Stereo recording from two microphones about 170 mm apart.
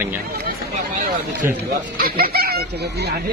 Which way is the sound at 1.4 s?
60° right (ahead or behind).